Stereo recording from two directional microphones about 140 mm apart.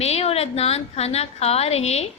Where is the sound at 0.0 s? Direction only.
45° left (ahead or behind).